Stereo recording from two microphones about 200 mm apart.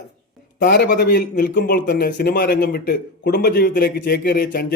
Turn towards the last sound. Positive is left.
turn(degrees=50)  # may be behind; listen again after turning